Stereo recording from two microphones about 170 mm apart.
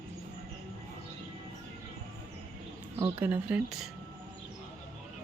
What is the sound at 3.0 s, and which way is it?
Speech, 10° right (ahead or behind).